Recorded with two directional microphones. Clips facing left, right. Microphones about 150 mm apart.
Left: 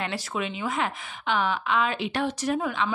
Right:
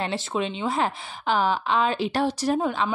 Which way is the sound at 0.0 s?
30° right (ahead or behind).